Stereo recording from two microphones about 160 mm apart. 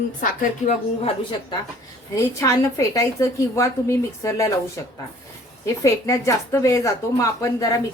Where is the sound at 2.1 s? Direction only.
20° left (ahead or behind).